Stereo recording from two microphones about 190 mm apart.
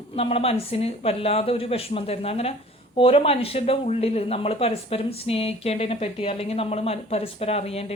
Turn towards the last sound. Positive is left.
turn(degrees=30)  # may be behind; listen again after turning